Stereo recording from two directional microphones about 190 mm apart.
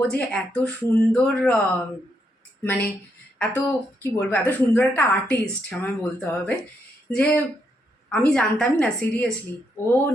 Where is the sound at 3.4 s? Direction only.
10° left (ahead or behind).